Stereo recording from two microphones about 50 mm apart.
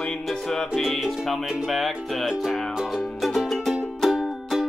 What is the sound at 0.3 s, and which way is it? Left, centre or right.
Music, centre.